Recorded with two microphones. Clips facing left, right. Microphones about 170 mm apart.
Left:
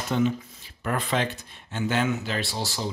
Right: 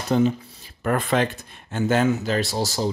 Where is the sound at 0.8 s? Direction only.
50° right (ahead or behind).